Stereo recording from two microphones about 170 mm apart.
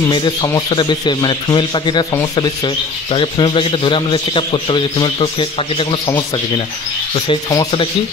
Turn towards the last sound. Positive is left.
turn(degrees=25)  # may be behind; listen again after turning